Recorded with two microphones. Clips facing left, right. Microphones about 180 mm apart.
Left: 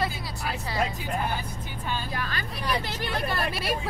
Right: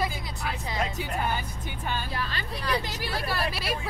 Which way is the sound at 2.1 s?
30° right (ahead or behind).